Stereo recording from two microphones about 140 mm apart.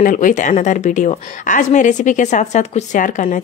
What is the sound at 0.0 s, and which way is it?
A woman's voice, 70° left (ahead or behind).